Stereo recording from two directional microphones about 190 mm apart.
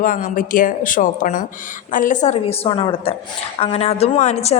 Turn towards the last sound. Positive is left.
turn(degrees=35)  # may be behind; listen again after turning